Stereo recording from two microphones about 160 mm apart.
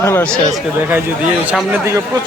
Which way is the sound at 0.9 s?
15° right (ahead or behind).